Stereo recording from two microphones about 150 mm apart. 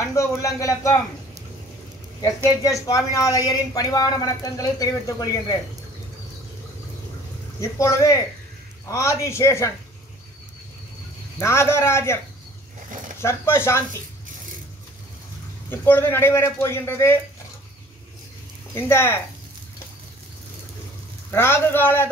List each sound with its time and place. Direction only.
0.0 s speech: 20° left (ahead or behind)
2.2 s speech: 20° left (ahead or behind)
7.6 s speech: 20° left (ahead or behind)
11.3 s speech: 20° left (ahead or behind)
13.2 s speech: 15° left (ahead or behind)
15.7 s speech: 15° left (ahead or behind)
18.8 s speech: 15° left (ahead or behind)
21.3 s speech: 15° left (ahead or behind)